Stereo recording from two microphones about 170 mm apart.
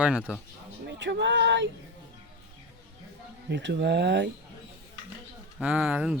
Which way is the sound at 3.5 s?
90° right.